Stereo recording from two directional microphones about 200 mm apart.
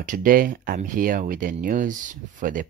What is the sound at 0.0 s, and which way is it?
Speech, 45° right (ahead or behind).